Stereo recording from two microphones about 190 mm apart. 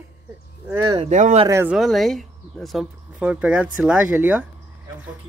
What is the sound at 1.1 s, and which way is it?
Speech, 35° right (ahead or behind).